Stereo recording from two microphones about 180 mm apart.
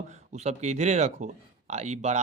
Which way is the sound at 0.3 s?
40° right (ahead or behind).